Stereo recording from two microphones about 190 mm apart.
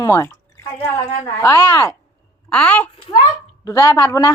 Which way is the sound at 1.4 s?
15° left (ahead or behind).